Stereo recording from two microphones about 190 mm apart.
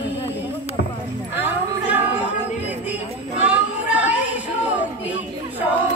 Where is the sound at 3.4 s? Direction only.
5° right (ahead or behind).